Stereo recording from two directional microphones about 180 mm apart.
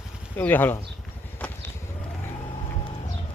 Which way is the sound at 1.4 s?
10° left (ahead or behind).